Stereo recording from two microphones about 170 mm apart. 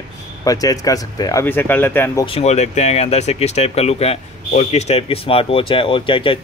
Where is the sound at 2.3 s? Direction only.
40° left (ahead or behind).